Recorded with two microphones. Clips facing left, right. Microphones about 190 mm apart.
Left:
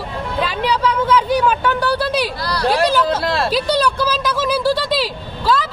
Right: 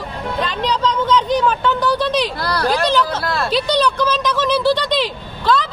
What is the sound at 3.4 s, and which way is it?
Speech, 5° left (ahead or behind).